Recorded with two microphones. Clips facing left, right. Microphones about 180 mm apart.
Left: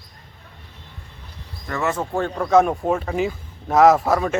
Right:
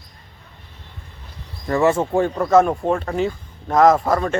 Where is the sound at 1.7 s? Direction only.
30° right (ahead or behind).